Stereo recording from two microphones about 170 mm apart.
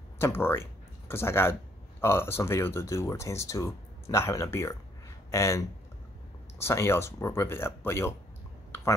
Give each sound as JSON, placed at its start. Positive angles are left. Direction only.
{"t": 0.2, "sound": "speech", "side_deg": 15}